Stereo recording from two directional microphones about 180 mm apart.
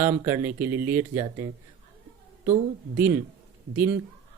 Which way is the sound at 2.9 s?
10° right (ahead or behind).